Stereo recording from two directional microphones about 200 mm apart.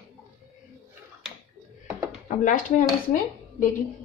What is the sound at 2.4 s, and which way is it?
Speech, 40° left (ahead or behind).